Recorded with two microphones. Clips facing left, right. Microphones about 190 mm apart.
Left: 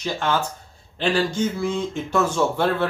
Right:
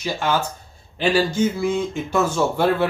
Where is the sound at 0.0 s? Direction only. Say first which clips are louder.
Right 1 dB; 5° right (ahead or behind).